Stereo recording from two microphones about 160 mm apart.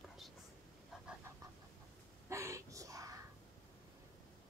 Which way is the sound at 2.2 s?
20° right (ahead or behind).